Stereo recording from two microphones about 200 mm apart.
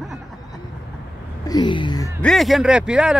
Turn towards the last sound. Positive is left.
turn(degrees=-5)  # may be behind; listen again after turning